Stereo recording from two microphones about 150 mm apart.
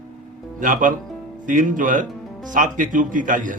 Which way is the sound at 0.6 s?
60° right (ahead or behind).